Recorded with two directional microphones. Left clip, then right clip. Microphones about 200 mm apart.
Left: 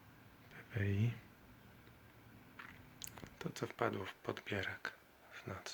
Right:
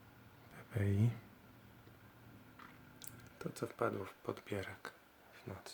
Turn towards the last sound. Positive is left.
turn(degrees=-5)  # may be behind; listen again after turning